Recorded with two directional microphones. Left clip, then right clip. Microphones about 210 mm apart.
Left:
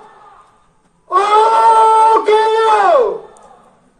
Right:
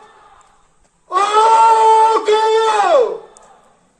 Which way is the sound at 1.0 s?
30° right (ahead or behind).